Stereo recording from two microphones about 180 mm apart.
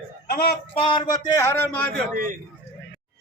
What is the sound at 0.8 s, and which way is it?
A man's voice, 30° left (ahead or behind).